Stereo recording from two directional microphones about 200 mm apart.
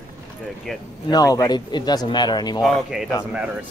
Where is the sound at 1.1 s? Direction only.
20° left (ahead or behind).